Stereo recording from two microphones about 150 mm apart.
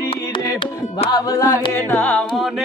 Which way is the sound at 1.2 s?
25° left (ahead or behind).